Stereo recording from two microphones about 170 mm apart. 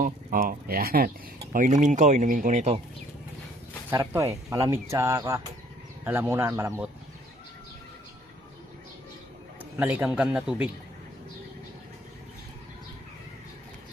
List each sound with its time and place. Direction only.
0.0 s speech: 55° right (ahead or behind)
1.5 s speech: 45° right (ahead or behind)
3.8 s speech: 15° right (ahead or behind)
9.6 s a man's voice: 10° right (ahead or behind)